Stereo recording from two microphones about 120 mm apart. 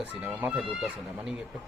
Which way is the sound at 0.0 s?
10° right (ahead or behind).